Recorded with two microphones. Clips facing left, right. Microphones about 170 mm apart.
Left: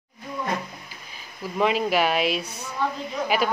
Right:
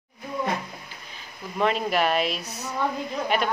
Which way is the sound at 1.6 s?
Centre (ahead or behind).